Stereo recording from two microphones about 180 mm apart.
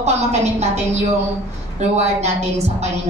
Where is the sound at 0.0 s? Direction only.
35° right (ahead or behind).